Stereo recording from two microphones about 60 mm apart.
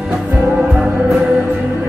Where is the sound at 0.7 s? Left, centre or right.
Centre.